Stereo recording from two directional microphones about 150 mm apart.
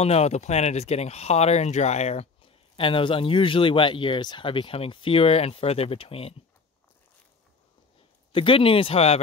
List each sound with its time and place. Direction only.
0.0 s speech: 45° left (ahead or behind)
8.3 s speech: 35° left (ahead or behind)